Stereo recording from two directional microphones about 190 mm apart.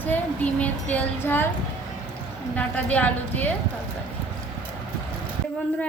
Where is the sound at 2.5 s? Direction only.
10° left (ahead or behind).